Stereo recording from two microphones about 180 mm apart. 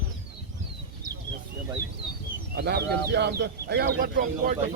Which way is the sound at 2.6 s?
65° right (ahead or behind).